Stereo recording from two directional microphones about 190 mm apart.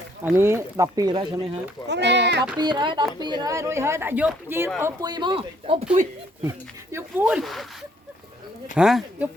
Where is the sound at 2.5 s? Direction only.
20° right (ahead or behind).